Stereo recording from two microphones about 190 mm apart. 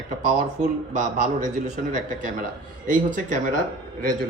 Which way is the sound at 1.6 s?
40° right (ahead or behind).